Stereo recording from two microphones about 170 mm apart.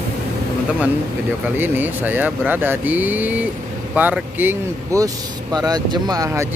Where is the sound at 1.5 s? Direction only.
10° right (ahead or behind).